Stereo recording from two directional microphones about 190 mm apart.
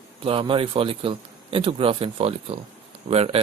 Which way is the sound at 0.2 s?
30° right (ahead or behind).